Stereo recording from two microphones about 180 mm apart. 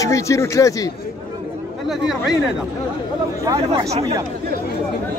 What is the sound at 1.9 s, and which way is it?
Speech, centre (ahead or behind).